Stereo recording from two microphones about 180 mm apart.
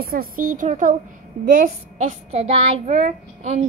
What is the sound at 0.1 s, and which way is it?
A child's voice, 50° right (ahead or behind).